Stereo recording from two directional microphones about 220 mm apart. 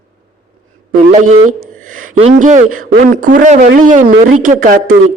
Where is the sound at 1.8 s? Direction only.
35° right (ahead or behind).